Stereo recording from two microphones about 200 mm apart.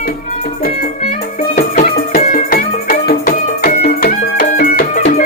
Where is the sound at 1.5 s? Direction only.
40° left (ahead or behind).